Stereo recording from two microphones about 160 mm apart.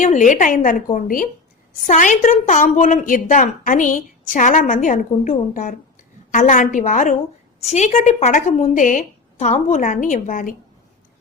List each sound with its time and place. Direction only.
0.0 s a woman's voice: 50° left (ahead or behind)